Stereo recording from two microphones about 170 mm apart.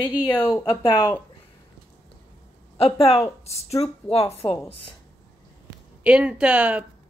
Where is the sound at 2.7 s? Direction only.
35° left (ahead or behind).